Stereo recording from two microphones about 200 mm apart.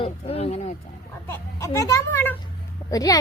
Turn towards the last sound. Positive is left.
turn(degrees=20)  # may be behind; listen again after turning